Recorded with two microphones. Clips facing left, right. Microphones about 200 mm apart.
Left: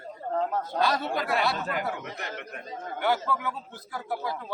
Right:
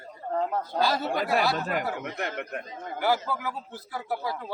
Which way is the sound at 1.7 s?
55° right (ahead or behind).